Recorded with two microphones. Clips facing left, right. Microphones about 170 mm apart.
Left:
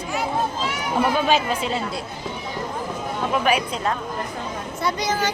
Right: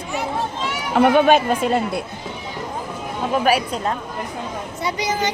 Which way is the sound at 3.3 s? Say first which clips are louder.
Right 3 dB; 40° right (ahead or behind).